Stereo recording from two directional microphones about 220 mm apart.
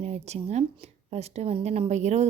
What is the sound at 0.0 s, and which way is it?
Speech, 30° right (ahead or behind).